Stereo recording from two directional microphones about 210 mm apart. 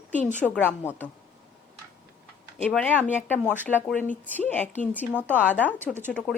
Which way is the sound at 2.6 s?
5° left (ahead or behind).